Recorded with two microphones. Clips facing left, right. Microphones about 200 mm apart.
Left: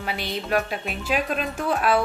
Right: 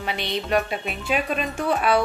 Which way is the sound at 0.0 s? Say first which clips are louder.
Right 2 dB; 5° left (ahead or behind).